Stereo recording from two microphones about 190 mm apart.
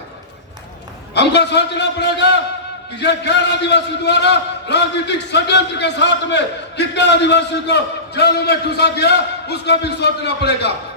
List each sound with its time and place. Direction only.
1.1 s a man's voice: 65° left (ahead or behind)